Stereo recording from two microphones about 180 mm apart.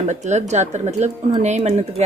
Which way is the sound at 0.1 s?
40° right (ahead or behind).